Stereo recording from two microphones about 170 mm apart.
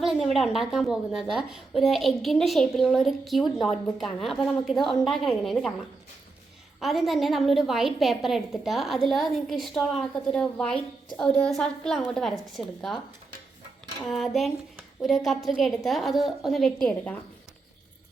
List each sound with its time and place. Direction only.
0.0 s a woman's voice: centre (ahead or behind)
6.7 s a woman's voice: centre (ahead or behind)
14.0 s a woman's voice: centre (ahead or behind)